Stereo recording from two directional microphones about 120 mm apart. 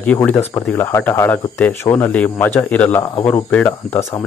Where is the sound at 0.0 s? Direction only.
15° left (ahead or behind).